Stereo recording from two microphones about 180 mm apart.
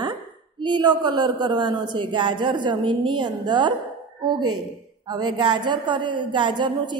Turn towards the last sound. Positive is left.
turn(degrees=-25)  # may be behind; listen again after turning